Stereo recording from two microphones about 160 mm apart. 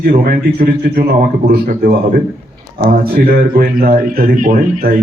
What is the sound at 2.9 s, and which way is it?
Speech, 70° right (ahead or behind).